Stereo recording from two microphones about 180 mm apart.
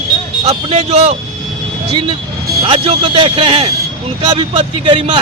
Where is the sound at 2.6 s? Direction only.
30° right (ahead or behind).